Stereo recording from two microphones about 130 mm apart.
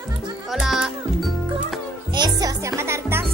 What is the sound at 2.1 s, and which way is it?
Music, 30° right (ahead or behind).